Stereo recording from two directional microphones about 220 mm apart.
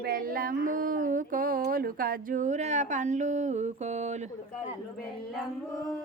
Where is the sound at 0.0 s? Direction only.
40° right (ahead or behind).